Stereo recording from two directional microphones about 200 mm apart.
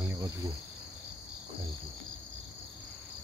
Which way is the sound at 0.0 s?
15° right (ahead or behind).